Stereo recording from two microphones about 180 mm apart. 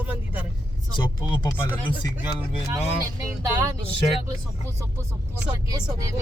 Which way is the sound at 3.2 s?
15° right (ahead or behind).